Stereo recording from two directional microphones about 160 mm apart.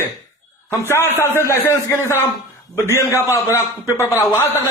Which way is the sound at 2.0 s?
15° right (ahead or behind).